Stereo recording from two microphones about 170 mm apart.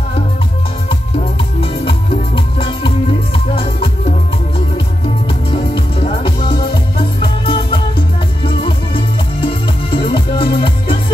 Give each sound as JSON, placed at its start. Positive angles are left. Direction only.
{"t": 1.6, "sound": "music", "side_deg": 30}
{"t": 5.5, "sound": "music", "side_deg": 30}